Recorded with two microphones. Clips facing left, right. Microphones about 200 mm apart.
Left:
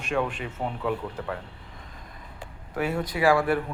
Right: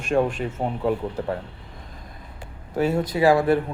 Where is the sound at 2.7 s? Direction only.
25° right (ahead or behind).